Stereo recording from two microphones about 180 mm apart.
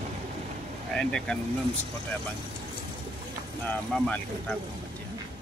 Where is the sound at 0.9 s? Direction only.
5° left (ahead or behind).